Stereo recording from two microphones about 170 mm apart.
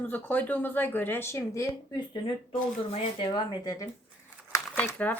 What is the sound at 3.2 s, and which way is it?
Speech, 25° left (ahead or behind).